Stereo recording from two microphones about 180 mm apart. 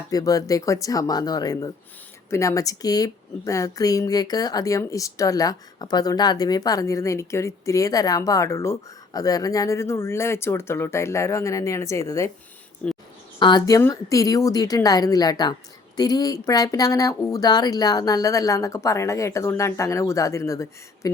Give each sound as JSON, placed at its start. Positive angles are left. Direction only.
{"t": 0.1, "sound": "speech", "side_deg": 20}
{"t": 13.4, "sound": "speech", "side_deg": 20}